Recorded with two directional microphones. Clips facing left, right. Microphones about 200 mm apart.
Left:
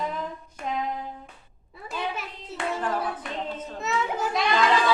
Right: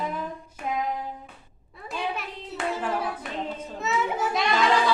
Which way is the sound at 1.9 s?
Centre (ahead or behind).